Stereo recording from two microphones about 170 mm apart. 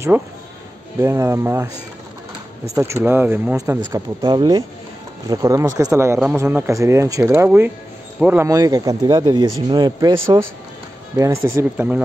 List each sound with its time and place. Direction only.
0.1 s speech: 10° right (ahead or behind)
2.7 s speech: 15° right (ahead or behind)
3.9 s speech: 25° right (ahead or behind); by 8.5 s 10° right (ahead or behind)
8.5 s speech: 20° right (ahead or behind)